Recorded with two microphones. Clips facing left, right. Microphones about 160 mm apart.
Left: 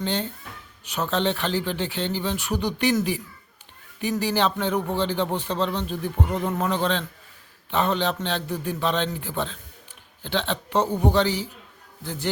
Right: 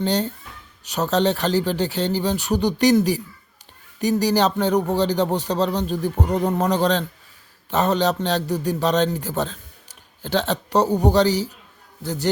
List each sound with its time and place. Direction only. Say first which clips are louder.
0.0 s a man's voice: right 5 dB; 40° right (ahead or behind)